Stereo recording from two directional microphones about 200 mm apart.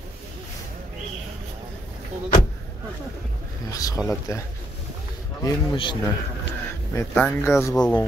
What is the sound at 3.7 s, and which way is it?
Speech, 15° left (ahead or behind).